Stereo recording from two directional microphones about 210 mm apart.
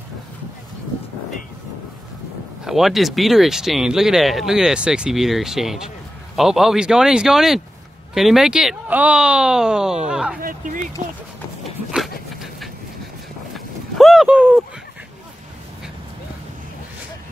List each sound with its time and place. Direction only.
2.6 s speech: centre (ahead or behind)
10.4 s speech: 40° right (ahead or behind)
13.9 s speech: centre (ahead or behind)